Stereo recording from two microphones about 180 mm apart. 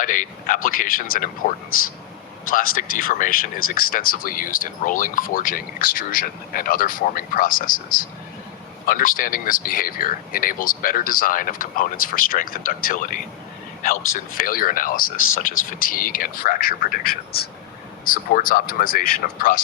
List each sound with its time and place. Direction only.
0.0 s speech: 45° left (ahead or behind)
2.5 s speech: 50° left (ahead or behind)
8.9 s speech: 50° left (ahead or behind)
14.3 s speech: 50° left (ahead or behind)